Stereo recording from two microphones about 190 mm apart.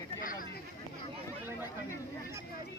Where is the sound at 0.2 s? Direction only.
45° left (ahead or behind).